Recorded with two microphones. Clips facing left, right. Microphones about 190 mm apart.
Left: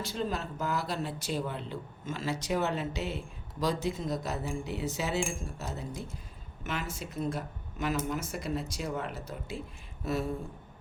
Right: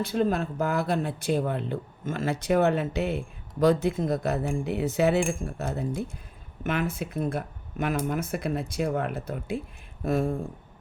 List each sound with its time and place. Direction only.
0.0 s speech: 55° right (ahead or behind)